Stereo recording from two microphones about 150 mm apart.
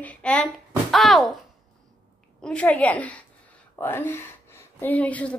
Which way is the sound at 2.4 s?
5° left (ahead or behind).